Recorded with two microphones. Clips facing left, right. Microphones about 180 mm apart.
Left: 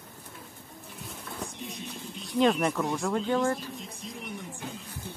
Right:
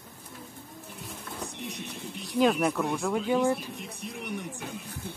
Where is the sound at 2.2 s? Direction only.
5° right (ahead or behind).